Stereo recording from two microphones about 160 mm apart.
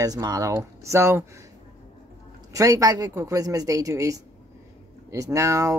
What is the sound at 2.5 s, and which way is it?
Speech, 20° right (ahead or behind).